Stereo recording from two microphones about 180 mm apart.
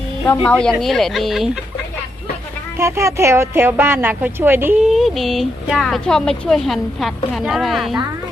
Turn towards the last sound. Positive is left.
turn(degrees=0)  # may be behind; listen again after turning